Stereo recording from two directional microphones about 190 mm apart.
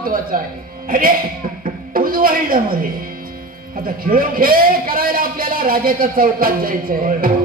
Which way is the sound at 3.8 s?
50° right (ahead or behind).